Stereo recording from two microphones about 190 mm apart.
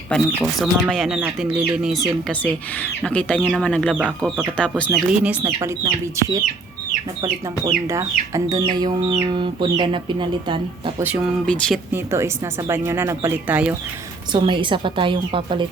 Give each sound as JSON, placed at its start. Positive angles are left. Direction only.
{"t": 0.1, "sound": "speech", "side_deg": 0}
{"t": 2.2, "sound": "speech", "side_deg": 10}
{"t": 4.9, "sound": "speech", "side_deg": -5}
{"t": 5.5, "sound": "speech", "side_deg": -20}
{"t": 11.0, "sound": "speech", "side_deg": -5}
{"t": 11.4, "sound": "speech", "side_deg": 5}
{"t": 11.9, "sound": "speech", "side_deg": -15}
{"t": 14.3, "sound": "speech", "side_deg": -25}